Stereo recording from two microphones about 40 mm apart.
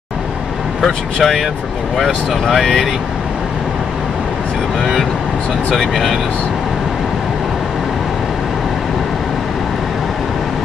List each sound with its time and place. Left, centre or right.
0.8 s speech: centre
5.8 s speech: centre